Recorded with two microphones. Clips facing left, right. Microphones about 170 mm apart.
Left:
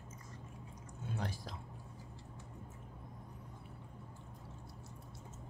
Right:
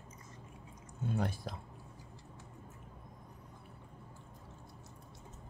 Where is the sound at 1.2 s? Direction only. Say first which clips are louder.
Right 5 dB; 55° right (ahead or behind).